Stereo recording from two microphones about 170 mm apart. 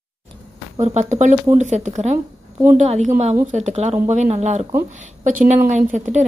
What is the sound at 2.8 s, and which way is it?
A woman's voice, 45° right (ahead or behind).